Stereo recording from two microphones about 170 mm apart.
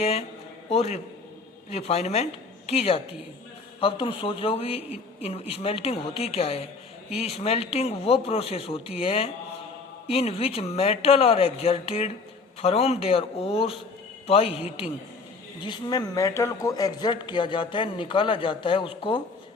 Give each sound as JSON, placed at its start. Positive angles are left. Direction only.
{"t": 0.0, "sound": "speech", "side_deg": 35}
{"t": 15.6, "sound": "speech", "side_deg": 25}